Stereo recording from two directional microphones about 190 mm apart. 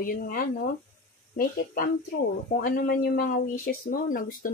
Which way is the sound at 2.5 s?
45° left (ahead or behind).